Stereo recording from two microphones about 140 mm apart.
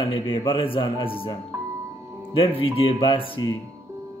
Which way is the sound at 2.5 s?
40° left (ahead or behind).